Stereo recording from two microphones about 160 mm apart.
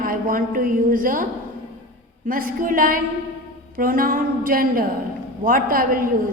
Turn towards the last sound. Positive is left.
turn(degrees=-60)  # may be behind; listen again after turning